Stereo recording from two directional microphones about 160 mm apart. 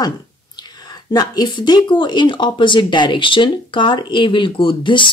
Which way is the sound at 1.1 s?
25° left (ahead or behind).